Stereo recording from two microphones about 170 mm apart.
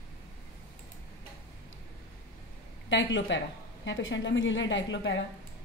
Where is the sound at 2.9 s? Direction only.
90° left.